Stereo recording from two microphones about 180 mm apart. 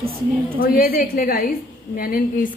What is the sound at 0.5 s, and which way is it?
A woman's voice, 55° left (ahead or behind).